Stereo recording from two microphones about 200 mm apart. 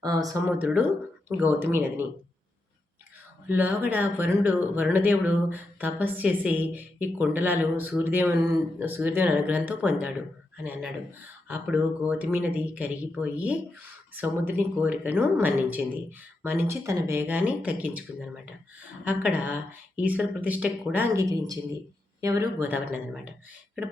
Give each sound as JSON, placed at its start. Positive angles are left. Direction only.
{"t": 0.0, "sound": "speech", "side_deg": -15}
{"t": 3.5, "sound": "speech", "side_deg": -10}
{"t": 11.4, "sound": "speech", "side_deg": -10}
{"t": 19.0, "sound": "speech", "side_deg": -5}